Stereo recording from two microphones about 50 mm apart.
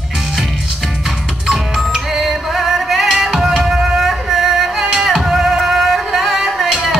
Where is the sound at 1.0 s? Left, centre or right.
Centre.